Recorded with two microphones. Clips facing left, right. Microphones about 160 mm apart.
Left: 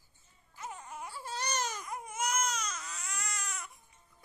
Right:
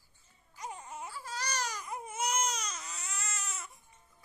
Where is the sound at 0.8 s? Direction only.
10° right (ahead or behind).